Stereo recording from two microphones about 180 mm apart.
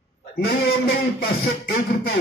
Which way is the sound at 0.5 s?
70° left (ahead or behind).